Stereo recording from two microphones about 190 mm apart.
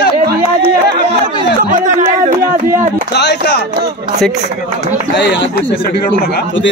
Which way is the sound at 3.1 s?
60° left (ahead or behind).